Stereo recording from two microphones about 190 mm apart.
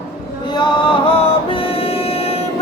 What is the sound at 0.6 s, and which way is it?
Music, 25° left (ahead or behind).